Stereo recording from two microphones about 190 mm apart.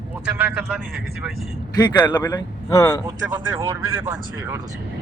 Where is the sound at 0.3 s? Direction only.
10° right (ahead or behind).